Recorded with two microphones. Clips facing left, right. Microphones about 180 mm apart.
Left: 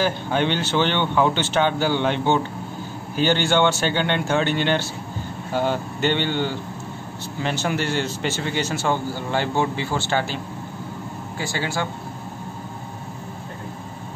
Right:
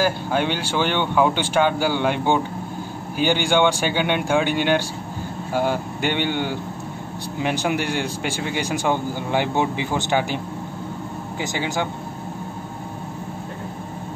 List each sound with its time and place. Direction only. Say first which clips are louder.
0.0 s speech: right 1 dB; 10° right (ahead or behind)